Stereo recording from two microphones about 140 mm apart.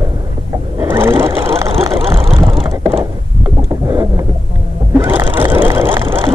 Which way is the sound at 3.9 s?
25° right (ahead or behind).